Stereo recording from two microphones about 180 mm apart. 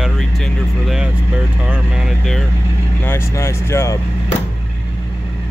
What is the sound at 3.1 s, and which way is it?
Speech, 15° left (ahead or behind).